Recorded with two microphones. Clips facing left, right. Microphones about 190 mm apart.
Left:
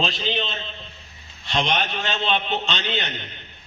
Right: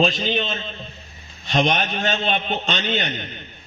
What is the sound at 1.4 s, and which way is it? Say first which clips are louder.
A man's voice: right 4 dB; 45° right (ahead or behind).